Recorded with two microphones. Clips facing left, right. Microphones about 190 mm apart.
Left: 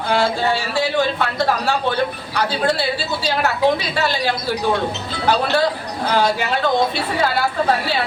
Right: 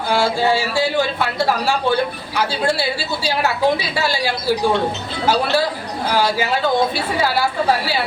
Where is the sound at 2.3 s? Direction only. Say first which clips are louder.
Right 1 dB; 5° right (ahead or behind).